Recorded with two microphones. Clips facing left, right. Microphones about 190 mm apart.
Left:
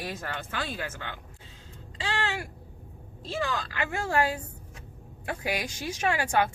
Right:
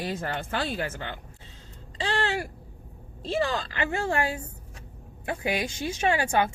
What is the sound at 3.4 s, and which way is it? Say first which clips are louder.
Speech: right 3 dB; 35° right (ahead or behind).